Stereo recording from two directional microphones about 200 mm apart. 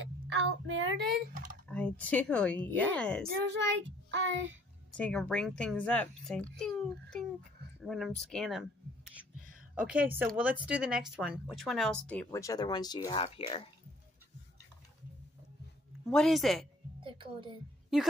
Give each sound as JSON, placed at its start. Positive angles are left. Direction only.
{"t": 0.4, "sound": "a child's voice", "side_deg": -65}
{"t": 1.3, "sound": "typing", "side_deg": -40}
{"t": 1.7, "sound": "speech", "side_deg": 5}
{"t": 3.6, "sound": "child singing", "side_deg": -65}
{"t": 4.9, "sound": "speech", "side_deg": 5}
{"t": 16.1, "sound": "speech", "side_deg": 0}
{"t": 17.0, "sound": "a woman's voice", "side_deg": -25}